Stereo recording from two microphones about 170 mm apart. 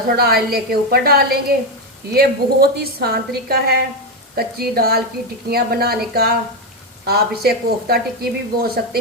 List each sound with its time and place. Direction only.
0.2 s speech: 65° right (ahead or behind)